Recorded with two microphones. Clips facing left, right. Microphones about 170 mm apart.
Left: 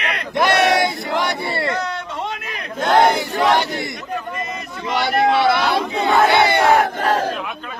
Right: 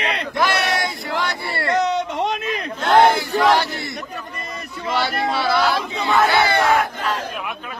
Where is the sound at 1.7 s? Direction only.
20° right (ahead or behind).